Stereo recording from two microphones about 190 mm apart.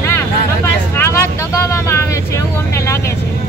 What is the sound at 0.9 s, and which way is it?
Speech, 15° left (ahead or behind).